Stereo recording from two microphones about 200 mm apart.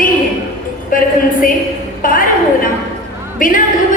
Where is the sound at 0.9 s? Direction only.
45° left (ahead or behind).